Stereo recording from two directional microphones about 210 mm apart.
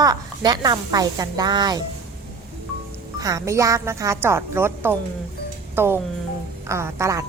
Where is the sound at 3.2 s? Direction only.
15° right (ahead or behind).